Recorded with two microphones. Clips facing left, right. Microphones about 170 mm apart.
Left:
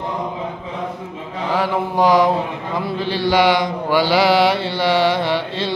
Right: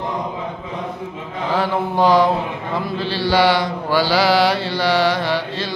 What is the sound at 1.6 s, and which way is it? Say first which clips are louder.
Mantra: even; 10° left (ahead or behind).